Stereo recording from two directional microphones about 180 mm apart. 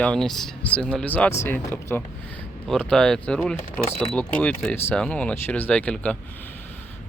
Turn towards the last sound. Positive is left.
turn(degrees=5)  # may be behind; listen again after turning